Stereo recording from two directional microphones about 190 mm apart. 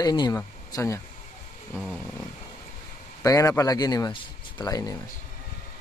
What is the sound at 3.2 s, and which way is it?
Speech, 15° left (ahead or behind).